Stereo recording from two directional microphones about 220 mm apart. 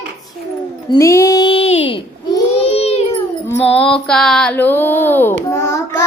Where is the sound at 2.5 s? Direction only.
30° left (ahead or behind).